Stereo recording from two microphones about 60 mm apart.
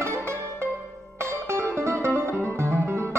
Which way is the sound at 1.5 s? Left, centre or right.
Right.